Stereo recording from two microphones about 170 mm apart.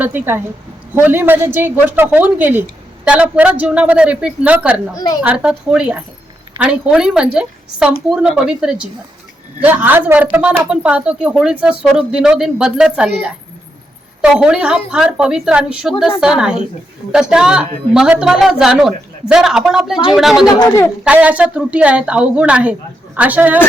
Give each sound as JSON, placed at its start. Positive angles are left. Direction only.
{"t": 0.0, "sound": "a woman's voice", "side_deg": -10}
{"t": 20.6, "sound": "a man's voice", "side_deg": 15}
{"t": 20.8, "sound": "a woman's voice", "side_deg": -5}